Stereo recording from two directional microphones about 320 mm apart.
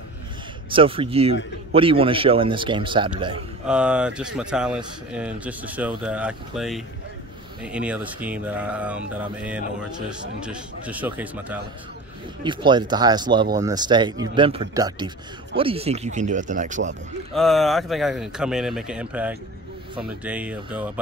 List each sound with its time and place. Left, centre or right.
0.7 s a man's voice: centre
3.6 s a man's voice: centre; by 16.9 s right
17.3 s speech: centre